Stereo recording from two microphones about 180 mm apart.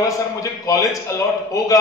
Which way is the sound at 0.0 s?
20° left (ahead or behind).